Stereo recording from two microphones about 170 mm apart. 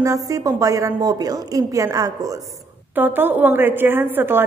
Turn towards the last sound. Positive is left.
turn(degrees=-10)  # may be behind; listen again after turning